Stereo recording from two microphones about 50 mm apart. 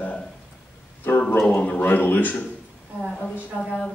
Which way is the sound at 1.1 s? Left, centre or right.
Left.